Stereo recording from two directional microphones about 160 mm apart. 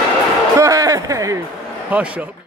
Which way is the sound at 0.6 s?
20° right (ahead or behind).